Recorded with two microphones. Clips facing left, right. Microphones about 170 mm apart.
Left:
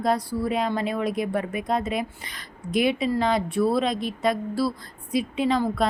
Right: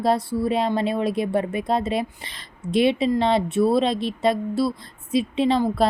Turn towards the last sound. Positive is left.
turn(degrees=-30)  # may be behind; listen again after turning